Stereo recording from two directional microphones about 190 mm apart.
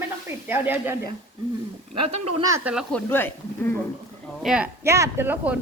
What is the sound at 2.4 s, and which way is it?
Speech, 15° right (ahead or behind).